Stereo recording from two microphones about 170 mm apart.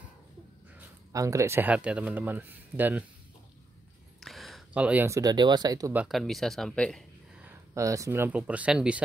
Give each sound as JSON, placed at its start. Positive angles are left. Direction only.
{"t": 0.7, "sound": "speech", "side_deg": -20}
{"t": 4.2, "sound": "speech", "side_deg": 0}
{"t": 5.9, "sound": "speech", "side_deg": 0}
{"t": 7.4, "sound": "speech", "side_deg": -20}